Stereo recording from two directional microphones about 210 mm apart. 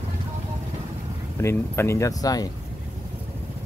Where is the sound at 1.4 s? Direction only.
15° left (ahead or behind).